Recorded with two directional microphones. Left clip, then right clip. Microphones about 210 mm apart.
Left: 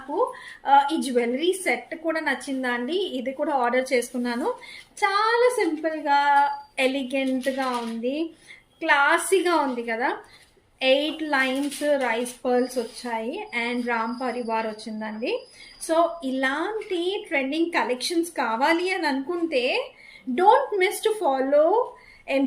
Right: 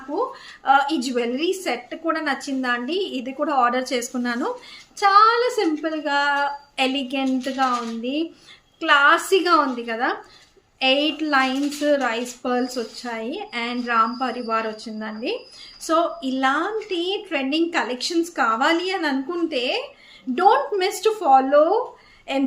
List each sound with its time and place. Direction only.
0.6 s a woman's voice: 15° right (ahead or behind)
8.8 s a woman's voice: 15° right (ahead or behind)